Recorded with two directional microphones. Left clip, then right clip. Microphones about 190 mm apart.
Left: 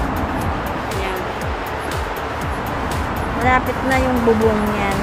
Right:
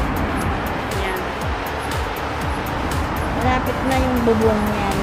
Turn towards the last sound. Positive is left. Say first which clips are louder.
# left 3 dB
turn(degrees=0)  # may be behind; listen again after turning